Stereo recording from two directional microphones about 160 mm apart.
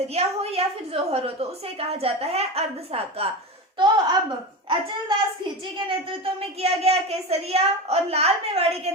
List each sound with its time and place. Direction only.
0.1 s a woman's voice: 40° right (ahead or behind)
3.8 s a woman's voice: 25° right (ahead or behind)